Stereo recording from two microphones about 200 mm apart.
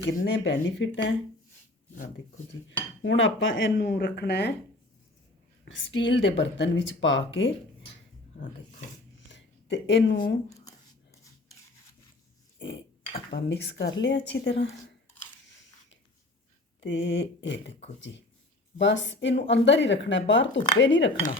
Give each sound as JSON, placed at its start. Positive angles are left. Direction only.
{"t": 0.3, "sound": "dishes", "side_deg": 65}
{"t": 2.5, "sound": "dishes", "side_deg": 65}
{"t": 5.6, "sound": "speech", "side_deg": 70}
{"t": 9.3, "sound": "speech", "side_deg": 65}
{"t": 13.1, "sound": "dishes", "side_deg": 60}
{"t": 16.8, "sound": "dishes", "side_deg": 65}